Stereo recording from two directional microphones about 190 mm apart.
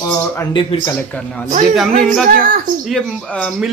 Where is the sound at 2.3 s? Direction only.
50° right (ahead or behind).